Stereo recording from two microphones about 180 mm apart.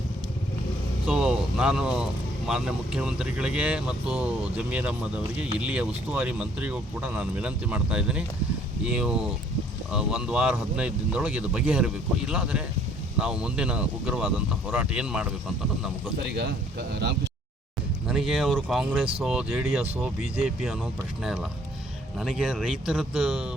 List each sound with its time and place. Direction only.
1.0 s vehicle: 5° right (ahead or behind)
2.5 s speech: 5° right (ahead or behind)
16.2 s speech: 70° right (ahead or behind)
18.1 s speech: centre (ahead or behind)
22.2 s speech: centre (ahead or behind)